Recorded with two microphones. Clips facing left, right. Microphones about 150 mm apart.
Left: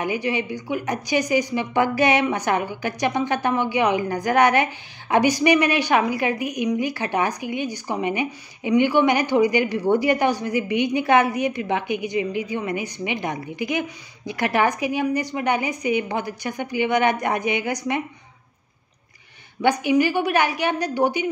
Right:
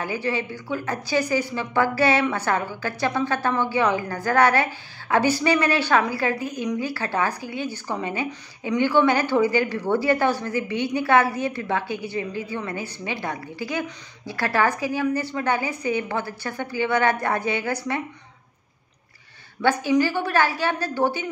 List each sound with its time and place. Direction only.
0.0 s speech: 15° left (ahead or behind)
19.6 s speech: 15° left (ahead or behind)